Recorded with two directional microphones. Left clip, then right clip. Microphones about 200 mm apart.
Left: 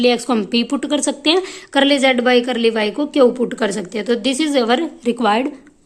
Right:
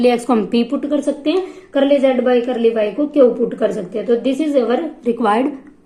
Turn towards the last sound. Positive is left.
turn(degrees=25)  # may be behind; listen again after turning